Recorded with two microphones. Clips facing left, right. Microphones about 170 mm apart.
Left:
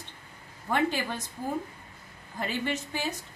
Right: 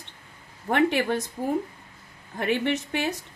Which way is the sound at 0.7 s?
65° right (ahead or behind).